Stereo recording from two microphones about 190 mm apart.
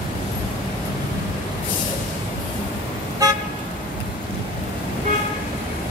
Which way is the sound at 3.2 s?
20° right (ahead or behind).